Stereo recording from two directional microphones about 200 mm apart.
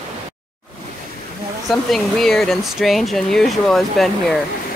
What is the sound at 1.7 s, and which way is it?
Speech, centre (ahead or behind).